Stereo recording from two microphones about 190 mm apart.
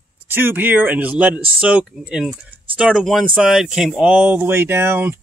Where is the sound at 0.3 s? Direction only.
10° right (ahead or behind).